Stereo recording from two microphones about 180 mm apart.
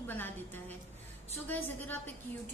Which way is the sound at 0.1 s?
10° left (ahead or behind).